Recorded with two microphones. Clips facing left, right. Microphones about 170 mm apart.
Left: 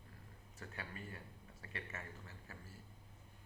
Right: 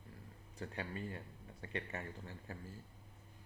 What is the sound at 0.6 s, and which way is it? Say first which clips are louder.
A man's voice: right 7 dB; 30° right (ahead or behind).